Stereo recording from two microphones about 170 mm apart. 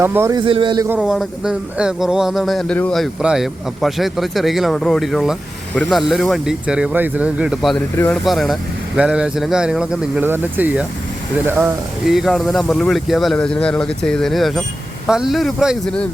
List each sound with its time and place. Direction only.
0.0 s speech: 15° right (ahead or behind)
0.3 s a man's voice: 30° right (ahead or behind)
0.9 s speech: 5° right (ahead or behind)
12.1 s speech: centre (ahead or behind)